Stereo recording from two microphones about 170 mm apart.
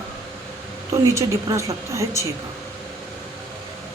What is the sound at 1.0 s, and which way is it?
A woman's voice, 15° right (ahead or behind).